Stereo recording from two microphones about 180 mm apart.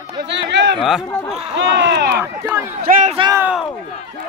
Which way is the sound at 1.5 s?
90° right.